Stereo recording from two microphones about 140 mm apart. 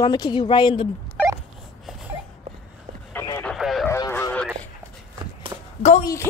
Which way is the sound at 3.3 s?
10° left (ahead or behind).